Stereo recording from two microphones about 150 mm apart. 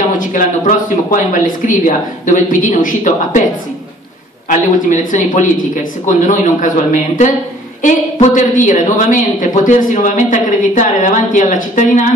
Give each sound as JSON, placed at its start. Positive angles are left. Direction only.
{"t": 0.2, "sound": "speech", "side_deg": 60}
{"t": 4.5, "sound": "speech", "side_deg": 60}